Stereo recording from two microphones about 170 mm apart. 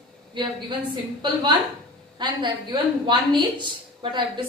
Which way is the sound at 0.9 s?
25° right (ahead or behind).